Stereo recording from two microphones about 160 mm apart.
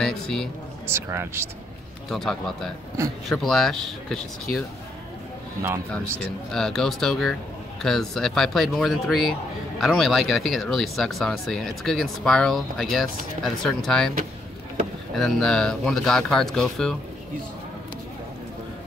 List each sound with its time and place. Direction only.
0.0 s a man's voice: 5° left (ahead or behind)
0.8 s speech: 15° right (ahead or behind)
2.0 s speech: centre (ahead or behind)
6.1 s speech: 5° left (ahead or behind)
15.1 s speech: centre (ahead or behind)